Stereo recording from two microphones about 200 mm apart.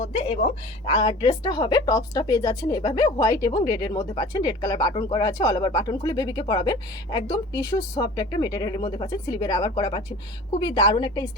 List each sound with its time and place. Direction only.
0.9 s speech: 25° left (ahead or behind)